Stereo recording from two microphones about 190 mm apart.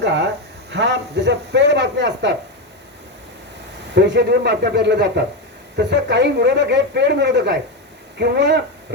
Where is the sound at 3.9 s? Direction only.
65° right (ahead or behind).